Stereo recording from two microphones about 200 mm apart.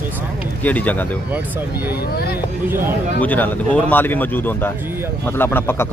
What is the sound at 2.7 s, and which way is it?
Speech, 10° right (ahead or behind).